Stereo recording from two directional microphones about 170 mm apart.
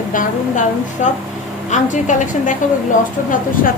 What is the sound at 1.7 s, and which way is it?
Speech, 50° left (ahead or behind).